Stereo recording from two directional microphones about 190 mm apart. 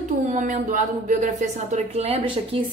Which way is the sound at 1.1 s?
40° right (ahead or behind).